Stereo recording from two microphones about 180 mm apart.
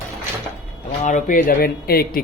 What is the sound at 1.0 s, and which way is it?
A man's voice, 45° left (ahead or behind).